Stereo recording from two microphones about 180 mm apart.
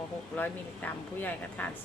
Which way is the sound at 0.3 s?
10° left (ahead or behind).